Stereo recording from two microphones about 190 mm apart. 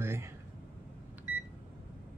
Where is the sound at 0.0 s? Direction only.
15° right (ahead or behind).